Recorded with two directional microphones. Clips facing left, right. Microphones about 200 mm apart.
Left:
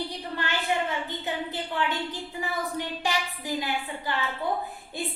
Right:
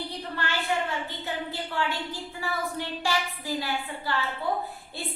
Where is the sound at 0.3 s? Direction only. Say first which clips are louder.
Left 1 dB; 20° left (ahead or behind).